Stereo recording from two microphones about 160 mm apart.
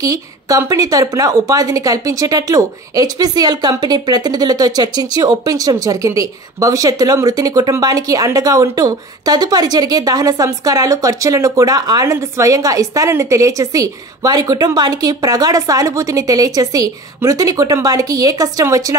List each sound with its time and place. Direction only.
0.0 s a woman's voice: 20° right (ahead or behind)